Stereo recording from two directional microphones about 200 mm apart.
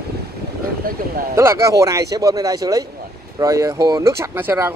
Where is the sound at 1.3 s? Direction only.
15° right (ahead or behind).